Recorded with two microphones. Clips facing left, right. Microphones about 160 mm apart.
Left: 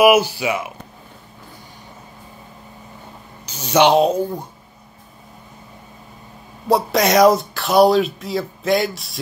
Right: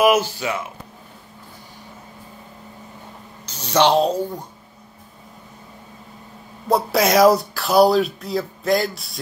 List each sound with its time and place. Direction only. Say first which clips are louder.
0.0 s speech: left 3 dB; 10° left (ahead or behind)
3.4 s speech: left 2 dB; 10° left (ahead or behind)
6.7 s speech: left 1 dB; centre (ahead or behind)